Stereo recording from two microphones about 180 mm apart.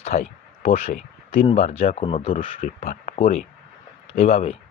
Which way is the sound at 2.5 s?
45° left (ahead or behind).